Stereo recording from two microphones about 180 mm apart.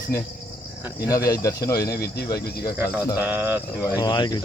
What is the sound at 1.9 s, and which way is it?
Speech, 60° left (ahead or behind).